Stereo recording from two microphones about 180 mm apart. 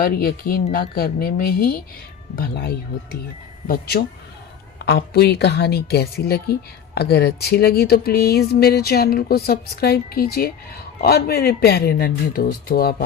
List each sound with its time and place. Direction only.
0.0 s a woman's voice: 55° left (ahead or behind)